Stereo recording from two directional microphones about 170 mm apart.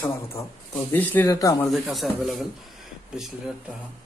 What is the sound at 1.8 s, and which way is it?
A man's voice, centre (ahead or behind).